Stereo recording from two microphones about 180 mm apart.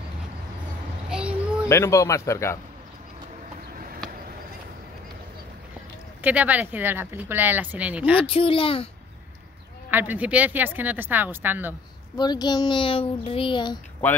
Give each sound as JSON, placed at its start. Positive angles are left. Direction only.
{"t": 1.1, "sound": "a sound", "side_deg": -5}
{"t": 1.7, "sound": "speech", "side_deg": 15}
{"t": 6.2, "sound": "a woman's voice", "side_deg": -10}
{"t": 8.2, "sound": "speech", "side_deg": 30}
{"t": 9.8, "sound": "a woman's voice", "side_deg": -10}
{"t": 12.2, "sound": "speech", "side_deg": 25}